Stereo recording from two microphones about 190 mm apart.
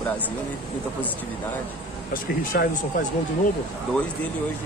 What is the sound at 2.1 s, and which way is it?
Speech, 45° left (ahead or behind).